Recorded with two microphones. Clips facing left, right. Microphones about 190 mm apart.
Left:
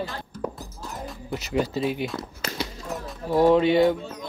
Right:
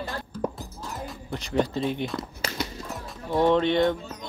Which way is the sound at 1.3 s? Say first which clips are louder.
Even; 5° left (ahead or behind).